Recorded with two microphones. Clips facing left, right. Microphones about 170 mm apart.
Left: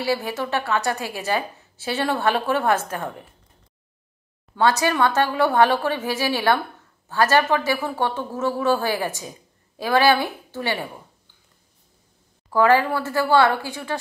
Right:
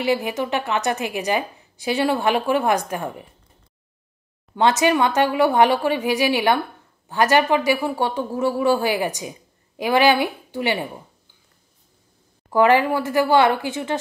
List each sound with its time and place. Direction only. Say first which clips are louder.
0.0 s a woman's voice: right 3 dB; 15° right (ahead or behind)
4.6 s a woman's voice: right 2 dB; 20° right (ahead or behind)
12.4 s a woman's voice: right 1 dB; 20° right (ahead or behind)